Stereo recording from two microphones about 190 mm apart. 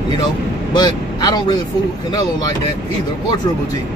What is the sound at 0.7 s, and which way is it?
Speech, 20° left (ahead or behind).